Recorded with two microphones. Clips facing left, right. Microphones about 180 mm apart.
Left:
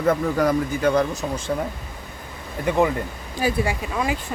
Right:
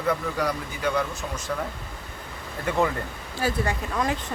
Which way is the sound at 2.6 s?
15° left (ahead or behind).